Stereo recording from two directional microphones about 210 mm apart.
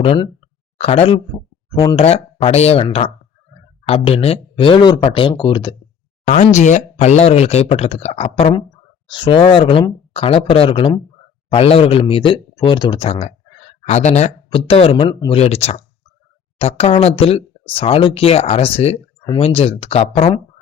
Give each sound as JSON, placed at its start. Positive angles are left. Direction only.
{"t": 0.0, "sound": "speech", "side_deg": 25}
{"t": 6.2, "sound": "speech", "side_deg": 35}